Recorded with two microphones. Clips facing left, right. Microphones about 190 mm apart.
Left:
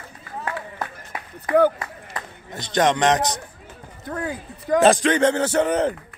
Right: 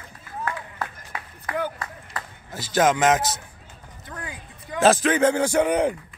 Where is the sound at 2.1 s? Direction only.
Centre (ahead or behind).